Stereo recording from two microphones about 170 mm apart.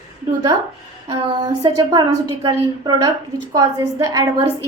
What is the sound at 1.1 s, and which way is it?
A woman's voice, 25° right (ahead or behind).